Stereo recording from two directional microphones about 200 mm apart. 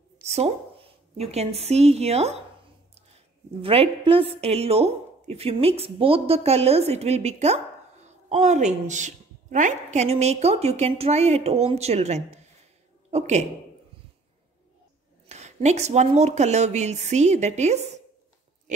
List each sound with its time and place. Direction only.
0.3 s speech: 30° right (ahead or behind)
3.6 s a woman's voice: 30° right (ahead or behind)
15.2 s a woman's voice: 35° right (ahead or behind)